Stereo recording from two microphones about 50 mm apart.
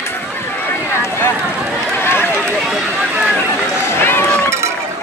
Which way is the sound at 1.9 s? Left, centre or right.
Left.